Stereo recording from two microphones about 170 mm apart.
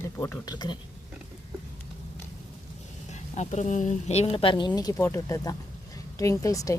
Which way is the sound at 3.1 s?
45° left (ahead or behind).